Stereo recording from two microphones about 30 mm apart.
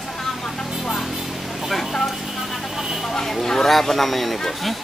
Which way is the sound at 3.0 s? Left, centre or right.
Centre.